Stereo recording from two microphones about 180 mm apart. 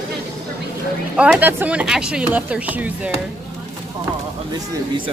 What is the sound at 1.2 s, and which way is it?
Speech, 10° right (ahead or behind).